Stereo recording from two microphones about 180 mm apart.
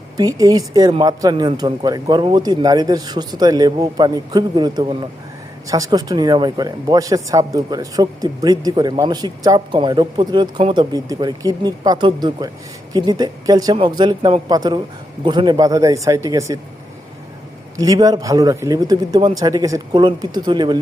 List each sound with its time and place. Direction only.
0.2 s speech: 20° right (ahead or behind)
17.7 s speech: 20° right (ahead or behind)